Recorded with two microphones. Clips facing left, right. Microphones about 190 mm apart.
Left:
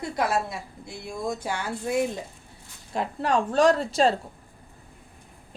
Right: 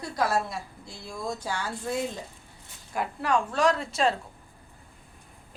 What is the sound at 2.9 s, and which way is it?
Speech, 30° left (ahead or behind).